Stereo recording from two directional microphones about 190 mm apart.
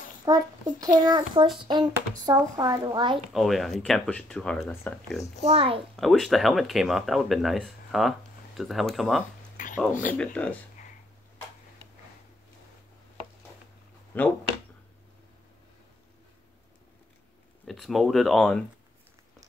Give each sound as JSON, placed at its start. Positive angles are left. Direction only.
{"t": 0.2, "sound": "speech", "side_deg": -20}
{"t": 3.3, "sound": "speech", "side_deg": 0}
{"t": 5.4, "sound": "a child's voice", "side_deg": -30}
{"t": 5.9, "sound": "speech", "side_deg": 0}
{"t": 9.6, "sound": "a sound", "side_deg": 45}
{"t": 10.1, "sound": "speech", "side_deg": 5}
{"t": 14.1, "sound": "speech", "side_deg": 10}
{"t": 17.6, "sound": "speech", "side_deg": 0}